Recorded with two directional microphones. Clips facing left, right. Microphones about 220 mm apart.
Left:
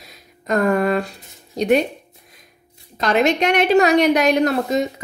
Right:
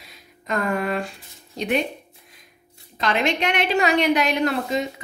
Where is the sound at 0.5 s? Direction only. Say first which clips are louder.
Left 7 dB; 40° left (ahead or behind).